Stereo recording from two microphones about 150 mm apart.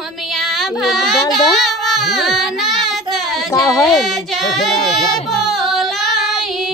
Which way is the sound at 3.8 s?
Centre (ahead or behind).